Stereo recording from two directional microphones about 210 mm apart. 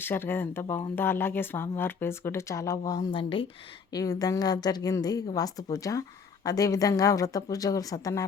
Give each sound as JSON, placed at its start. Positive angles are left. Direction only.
{"t": 0.0, "sound": "a woman's voice", "side_deg": 10}